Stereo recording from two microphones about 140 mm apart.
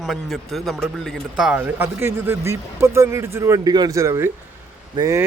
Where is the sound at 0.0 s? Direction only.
Centre (ahead or behind).